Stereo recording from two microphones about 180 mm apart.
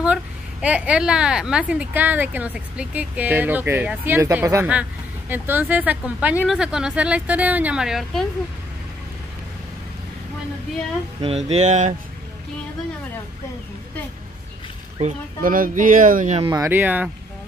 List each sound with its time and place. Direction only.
0.0 s a woman's voice: 5° right (ahead or behind)
11.1 s speech: 35° right (ahead or behind)
15.0 s speech: 45° right (ahead or behind)
16.4 s a woman's voice: 15° right (ahead or behind)